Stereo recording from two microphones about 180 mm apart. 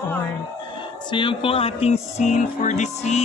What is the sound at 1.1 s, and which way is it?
Music, 30° left (ahead or behind).